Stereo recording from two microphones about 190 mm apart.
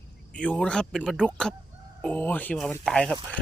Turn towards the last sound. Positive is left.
turn(degrees=5)  # may be behind; listen again after turning